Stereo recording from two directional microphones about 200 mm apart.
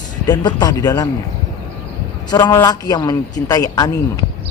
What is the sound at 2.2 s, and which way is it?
A man's voice, 20° left (ahead or behind).